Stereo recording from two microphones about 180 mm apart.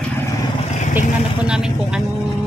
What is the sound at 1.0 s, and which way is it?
Speech, 5° right (ahead or behind).